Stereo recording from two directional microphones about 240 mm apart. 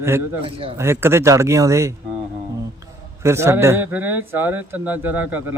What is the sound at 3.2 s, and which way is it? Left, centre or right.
Speech, centre.